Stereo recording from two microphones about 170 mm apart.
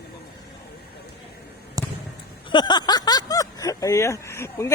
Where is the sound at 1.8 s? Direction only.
20° right (ahead or behind).